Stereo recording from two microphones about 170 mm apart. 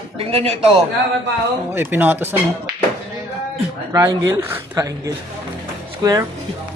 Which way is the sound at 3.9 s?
20° right (ahead or behind).